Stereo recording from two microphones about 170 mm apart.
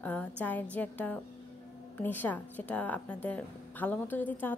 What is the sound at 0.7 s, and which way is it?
A woman's voice, 10° left (ahead or behind).